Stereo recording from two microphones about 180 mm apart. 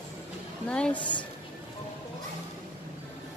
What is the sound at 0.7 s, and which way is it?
Speech, 5° left (ahead or behind).